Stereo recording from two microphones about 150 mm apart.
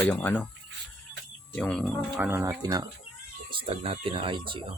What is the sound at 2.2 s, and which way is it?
Speech, 15° right (ahead or behind).